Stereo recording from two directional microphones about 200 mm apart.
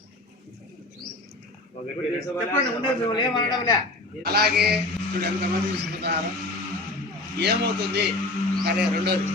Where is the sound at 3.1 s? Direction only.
20° left (ahead or behind).